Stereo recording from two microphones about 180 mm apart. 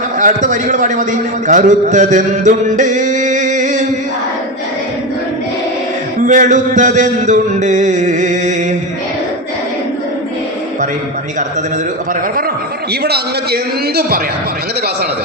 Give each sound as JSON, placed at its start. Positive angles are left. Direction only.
{"t": 0.2, "sound": "a man's voice", "side_deg": -45}
{"t": 6.2, "sound": "a man's voice", "side_deg": -45}
{"t": 12.9, "sound": "a man's voice", "side_deg": -60}